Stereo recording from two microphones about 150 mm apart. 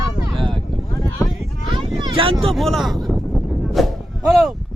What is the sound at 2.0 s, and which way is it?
Speech, 35° right (ahead or behind).